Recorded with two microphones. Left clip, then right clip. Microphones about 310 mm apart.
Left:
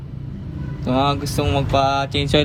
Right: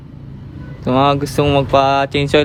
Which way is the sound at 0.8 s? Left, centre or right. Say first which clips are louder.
Right 6 dB; right.